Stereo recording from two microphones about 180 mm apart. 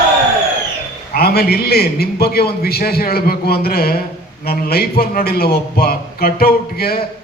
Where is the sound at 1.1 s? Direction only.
60° left (ahead or behind).